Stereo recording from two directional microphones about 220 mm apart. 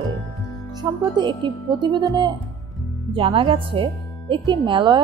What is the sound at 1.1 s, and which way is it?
Speech, 20° right (ahead or behind).